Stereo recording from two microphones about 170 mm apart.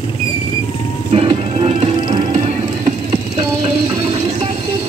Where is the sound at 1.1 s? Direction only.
35° right (ahead or behind).